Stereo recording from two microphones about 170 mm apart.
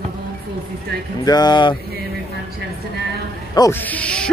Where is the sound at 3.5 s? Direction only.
20° left (ahead or behind).